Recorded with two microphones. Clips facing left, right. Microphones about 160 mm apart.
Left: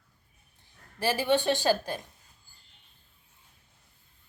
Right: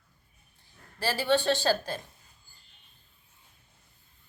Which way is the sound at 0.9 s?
15° left (ahead or behind).